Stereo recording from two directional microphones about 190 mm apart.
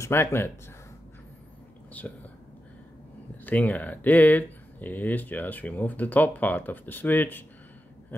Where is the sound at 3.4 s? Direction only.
10° left (ahead or behind).